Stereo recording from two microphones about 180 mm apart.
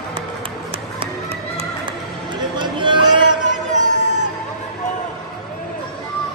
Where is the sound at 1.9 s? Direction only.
25° right (ahead or behind).